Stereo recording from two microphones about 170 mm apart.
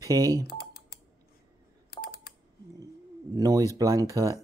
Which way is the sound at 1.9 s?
65° left (ahead or behind).